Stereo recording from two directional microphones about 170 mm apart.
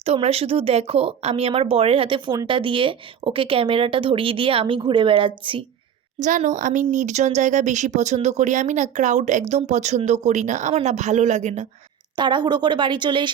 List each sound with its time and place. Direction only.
0.0 s speech: 35° right (ahead or behind)
6.1 s speech: 45° right (ahead or behind)
12.1 s speech: 25° right (ahead or behind)